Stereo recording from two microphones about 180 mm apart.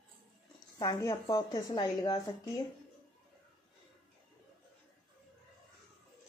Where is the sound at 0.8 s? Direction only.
20° left (ahead or behind).